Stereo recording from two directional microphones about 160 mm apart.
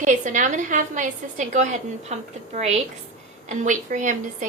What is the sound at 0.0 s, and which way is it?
A woman's voice, 50° right (ahead or behind).